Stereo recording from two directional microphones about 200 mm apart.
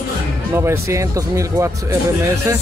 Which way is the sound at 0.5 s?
15° right (ahead or behind).